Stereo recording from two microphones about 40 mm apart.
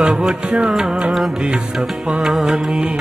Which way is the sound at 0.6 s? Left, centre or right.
Centre.